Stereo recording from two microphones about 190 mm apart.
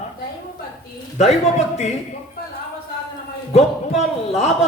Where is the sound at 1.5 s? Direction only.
35° left (ahead or behind).